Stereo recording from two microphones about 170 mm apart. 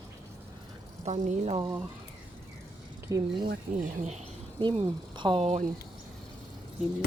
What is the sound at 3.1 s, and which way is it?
Speech, 20° right (ahead or behind).